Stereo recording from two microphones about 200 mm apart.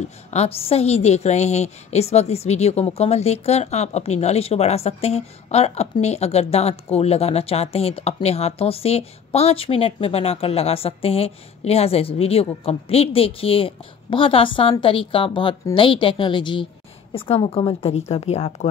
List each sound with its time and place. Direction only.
0.0 s a woman's voice: 35° left (ahead or behind)